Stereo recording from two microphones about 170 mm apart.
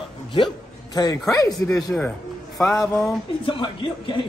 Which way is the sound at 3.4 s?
30° left (ahead or behind).